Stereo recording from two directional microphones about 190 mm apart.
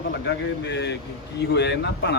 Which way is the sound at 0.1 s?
65° left (ahead or behind).